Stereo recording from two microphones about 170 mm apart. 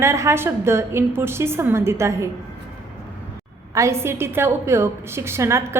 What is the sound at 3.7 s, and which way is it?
A woman's voice, 15° right (ahead or behind).